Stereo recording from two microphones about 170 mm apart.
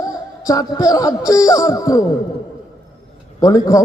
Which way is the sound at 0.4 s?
20° left (ahead or behind).